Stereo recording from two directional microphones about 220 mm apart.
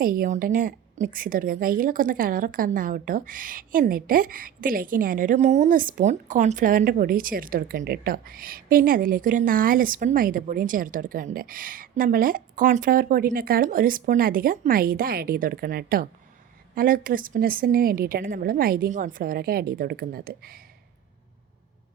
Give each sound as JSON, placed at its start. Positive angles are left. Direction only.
{"t": 0.0, "sound": "a woman's voice", "side_deg": -40}